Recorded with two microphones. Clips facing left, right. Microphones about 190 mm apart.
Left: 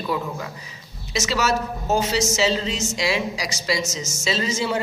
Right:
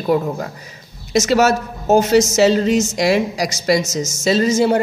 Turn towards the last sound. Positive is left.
turn(degrees=-45)  # may be behind; listen again after turning